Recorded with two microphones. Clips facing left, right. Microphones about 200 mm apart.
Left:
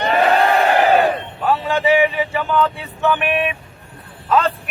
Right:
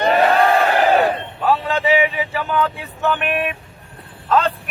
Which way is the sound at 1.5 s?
Centre (ahead or behind).